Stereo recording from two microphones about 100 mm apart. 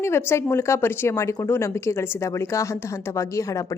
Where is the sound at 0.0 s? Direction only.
25° left (ahead or behind).